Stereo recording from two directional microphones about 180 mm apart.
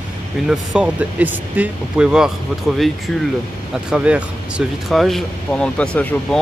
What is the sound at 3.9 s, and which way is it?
Speech, 5° right (ahead or behind).